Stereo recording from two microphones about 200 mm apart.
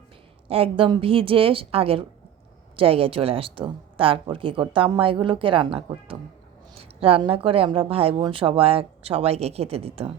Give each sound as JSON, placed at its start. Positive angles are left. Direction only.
{"t": 0.4, "sound": "a woman's voice", "side_deg": -30}